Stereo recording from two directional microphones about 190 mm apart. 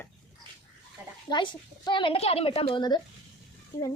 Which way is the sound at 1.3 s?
25° left (ahead or behind).